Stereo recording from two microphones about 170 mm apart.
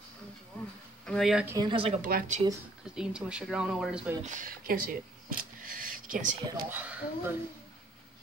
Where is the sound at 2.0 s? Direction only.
55° right (ahead or behind).